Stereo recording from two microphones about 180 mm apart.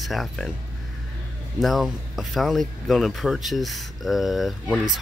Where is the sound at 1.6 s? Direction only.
Centre (ahead or behind).